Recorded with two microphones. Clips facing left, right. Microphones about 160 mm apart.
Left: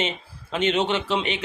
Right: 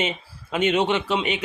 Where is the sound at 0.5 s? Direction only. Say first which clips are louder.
Right 2 dB; 10° right (ahead or behind).